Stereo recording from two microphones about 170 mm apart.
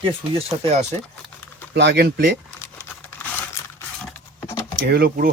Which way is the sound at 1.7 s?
80° right.